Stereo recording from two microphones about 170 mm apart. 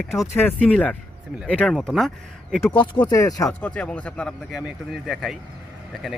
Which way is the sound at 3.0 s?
20° left (ahead or behind).